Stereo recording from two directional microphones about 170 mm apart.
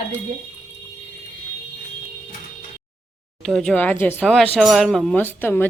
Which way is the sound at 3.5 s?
5° left (ahead or behind).